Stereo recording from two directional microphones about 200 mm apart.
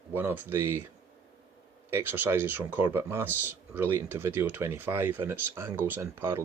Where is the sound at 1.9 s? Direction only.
10° right (ahead or behind).